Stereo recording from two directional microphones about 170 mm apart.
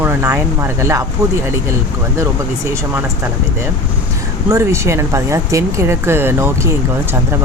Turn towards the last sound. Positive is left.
turn(degrees=-15)  # may be behind; listen again after turning